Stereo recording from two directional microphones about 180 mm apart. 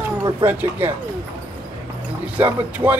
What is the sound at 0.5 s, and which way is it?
Speech, 10° right (ahead or behind).